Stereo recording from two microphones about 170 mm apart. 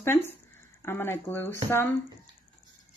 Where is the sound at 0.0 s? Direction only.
15° left (ahead or behind).